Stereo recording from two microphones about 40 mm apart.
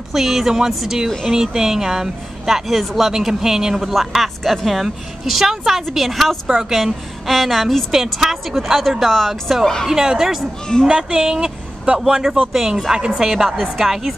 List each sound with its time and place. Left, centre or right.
0.1 s a woman's voice: centre
6.4 s speech: centre
6.7 s a woman's voice: centre
7.9 s a woman's voice: centre
9.0 s a woman's voice: centre
9.8 s speech: centre
10.9 s speech: right
12.5 s speech: centre
12.9 s speech: centre
13.3 s a woman's voice: centre